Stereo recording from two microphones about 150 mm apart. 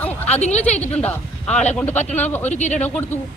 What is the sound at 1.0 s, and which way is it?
Speech, 5° left (ahead or behind).